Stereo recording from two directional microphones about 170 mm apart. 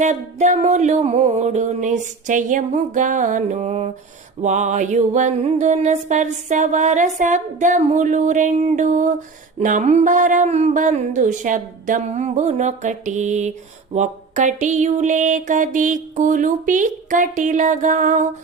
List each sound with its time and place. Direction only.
0.0 s music: 45° right (ahead or behind)